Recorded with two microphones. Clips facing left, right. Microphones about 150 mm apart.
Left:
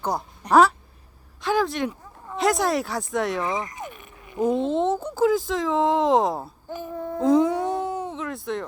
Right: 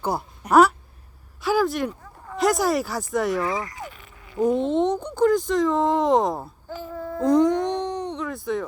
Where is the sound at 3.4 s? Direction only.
20° left (ahead or behind).